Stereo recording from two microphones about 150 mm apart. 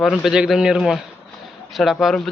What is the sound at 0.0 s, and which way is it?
Speech, centre (ahead or behind).